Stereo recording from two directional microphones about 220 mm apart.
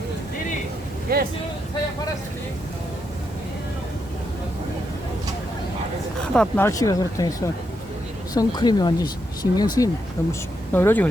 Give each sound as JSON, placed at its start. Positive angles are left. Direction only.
{"t": 1.1, "sound": "speech", "side_deg": -45}
{"t": 6.3, "sound": "speech", "side_deg": 5}